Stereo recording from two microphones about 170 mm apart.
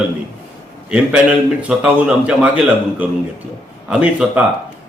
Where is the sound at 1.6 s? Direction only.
10° right (ahead or behind).